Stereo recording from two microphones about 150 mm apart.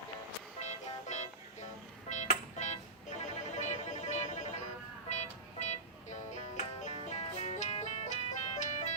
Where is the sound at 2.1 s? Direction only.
50° left (ahead or behind).